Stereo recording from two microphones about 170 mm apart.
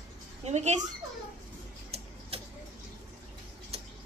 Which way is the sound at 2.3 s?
35° right (ahead or behind).